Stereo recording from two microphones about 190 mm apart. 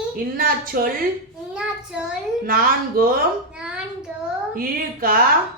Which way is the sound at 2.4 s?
50° right (ahead or behind).